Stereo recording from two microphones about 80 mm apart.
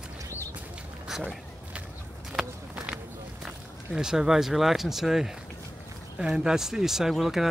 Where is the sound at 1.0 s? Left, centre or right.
Centre.